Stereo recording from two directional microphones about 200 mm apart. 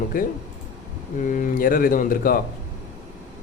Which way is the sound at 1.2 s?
40° left (ahead or behind).